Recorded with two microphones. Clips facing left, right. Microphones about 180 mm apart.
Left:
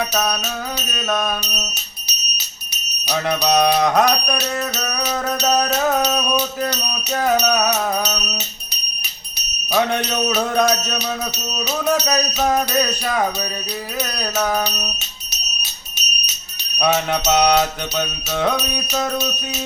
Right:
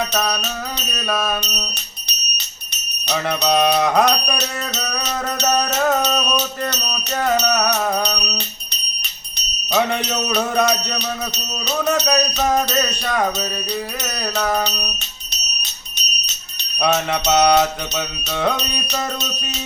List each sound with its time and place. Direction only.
0.1 s music: centre (ahead or behind)
3.1 s music: centre (ahead or behind)
9.7 s music: centre (ahead or behind)
16.8 s music: 5° left (ahead or behind)